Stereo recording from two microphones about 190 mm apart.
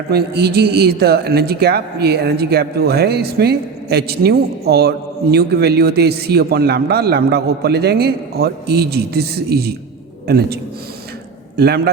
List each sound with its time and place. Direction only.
0.1 s a man's voice: 55° right (ahead or behind)